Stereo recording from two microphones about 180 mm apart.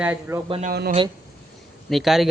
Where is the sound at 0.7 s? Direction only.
55° right (ahead or behind).